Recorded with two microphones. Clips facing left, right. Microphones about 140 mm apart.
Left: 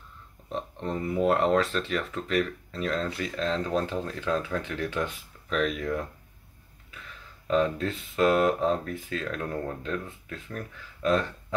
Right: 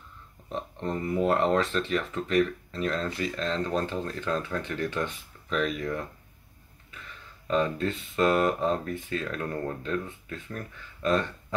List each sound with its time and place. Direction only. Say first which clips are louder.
0.5 s speech: even; centre (ahead or behind)
7.4 s speech: left 1 dB; centre (ahead or behind)